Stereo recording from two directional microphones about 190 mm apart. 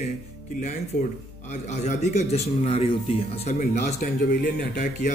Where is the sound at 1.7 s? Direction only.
35° left (ahead or behind).